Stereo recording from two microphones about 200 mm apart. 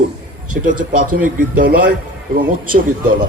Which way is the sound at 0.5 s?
55° right (ahead or behind).